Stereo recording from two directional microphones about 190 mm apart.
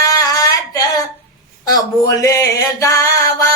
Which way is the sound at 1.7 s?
15° left (ahead or behind).